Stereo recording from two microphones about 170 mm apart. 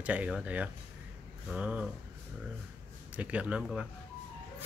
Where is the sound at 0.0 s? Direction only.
10° right (ahead or behind).